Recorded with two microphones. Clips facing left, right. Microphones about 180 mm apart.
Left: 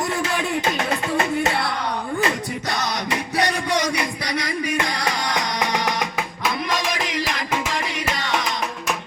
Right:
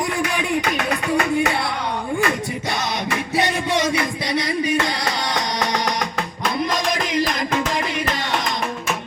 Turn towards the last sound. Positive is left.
turn(degrees=5)  # may be behind; listen again after turning